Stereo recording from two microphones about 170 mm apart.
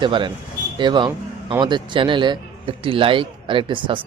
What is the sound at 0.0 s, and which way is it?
A man's voice, 30° right (ahead or behind).